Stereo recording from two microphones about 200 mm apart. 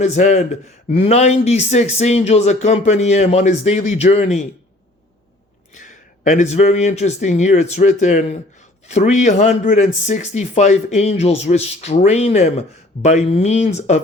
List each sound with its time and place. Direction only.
0.0 s speech: 35° left (ahead or behind)
5.7 s speech: 40° left (ahead or behind)